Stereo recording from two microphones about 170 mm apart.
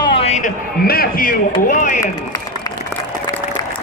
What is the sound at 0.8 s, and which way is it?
A man's voice, 60° left (ahead or behind).